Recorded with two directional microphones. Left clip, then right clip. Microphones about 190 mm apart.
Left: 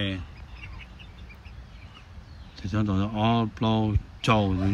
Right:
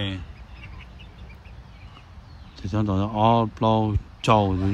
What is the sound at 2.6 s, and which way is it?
Speech, 15° right (ahead or behind).